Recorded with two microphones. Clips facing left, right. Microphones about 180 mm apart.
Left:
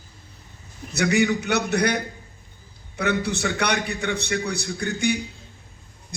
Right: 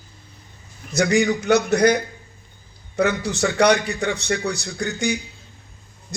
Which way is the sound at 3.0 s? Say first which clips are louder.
Right 3 dB; 60° left (ahead or behind).